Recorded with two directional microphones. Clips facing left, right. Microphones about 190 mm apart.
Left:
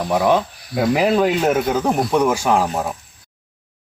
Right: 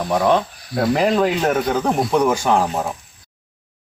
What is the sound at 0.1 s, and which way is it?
Speech, 5° left (ahead or behind).